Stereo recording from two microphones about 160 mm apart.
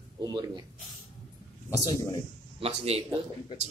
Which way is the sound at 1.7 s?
20° left (ahead or behind).